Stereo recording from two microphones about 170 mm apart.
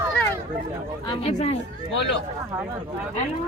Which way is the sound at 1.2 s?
40° left (ahead or behind).